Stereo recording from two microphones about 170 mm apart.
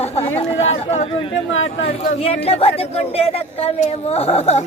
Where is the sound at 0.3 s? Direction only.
40° left (ahead or behind).